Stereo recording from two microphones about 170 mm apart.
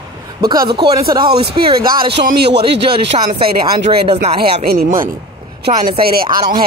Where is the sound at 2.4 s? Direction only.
80° right.